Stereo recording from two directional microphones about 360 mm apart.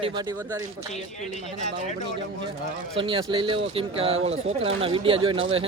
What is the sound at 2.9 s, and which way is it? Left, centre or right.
Speech, centre.